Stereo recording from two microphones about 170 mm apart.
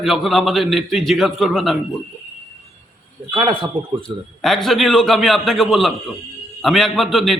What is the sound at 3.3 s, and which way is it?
Speech, 30° right (ahead or behind).